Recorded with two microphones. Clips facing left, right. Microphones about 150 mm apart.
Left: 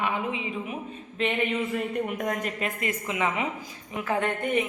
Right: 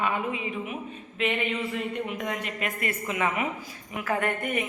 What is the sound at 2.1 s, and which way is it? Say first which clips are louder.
Speech: left 3 dB; 45° left (ahead or behind).